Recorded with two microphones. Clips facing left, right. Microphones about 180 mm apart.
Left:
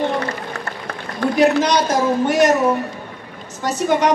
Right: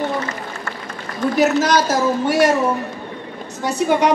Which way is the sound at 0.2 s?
65° left (ahead or behind).